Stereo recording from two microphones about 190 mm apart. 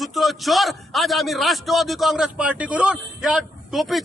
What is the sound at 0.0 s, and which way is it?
A man's voice, centre (ahead or behind).